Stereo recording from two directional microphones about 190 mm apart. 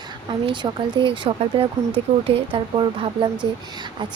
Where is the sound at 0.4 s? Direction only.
25° right (ahead or behind).